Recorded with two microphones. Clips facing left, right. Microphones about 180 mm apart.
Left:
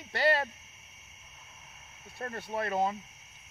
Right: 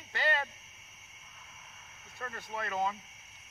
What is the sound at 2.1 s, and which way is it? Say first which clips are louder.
Speech: left 5 dB; 30° left (ahead or behind).